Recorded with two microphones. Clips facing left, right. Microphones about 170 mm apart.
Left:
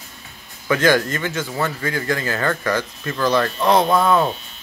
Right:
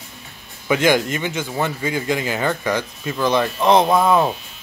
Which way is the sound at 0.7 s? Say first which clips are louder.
Even; 20° right (ahead or behind).